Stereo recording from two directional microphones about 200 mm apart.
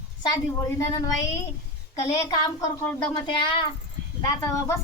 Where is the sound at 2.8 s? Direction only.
10° left (ahead or behind).